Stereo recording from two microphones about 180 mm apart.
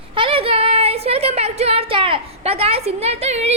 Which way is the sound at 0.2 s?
30° right (ahead or behind).